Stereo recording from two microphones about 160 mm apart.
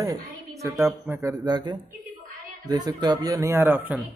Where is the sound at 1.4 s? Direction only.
25° right (ahead or behind).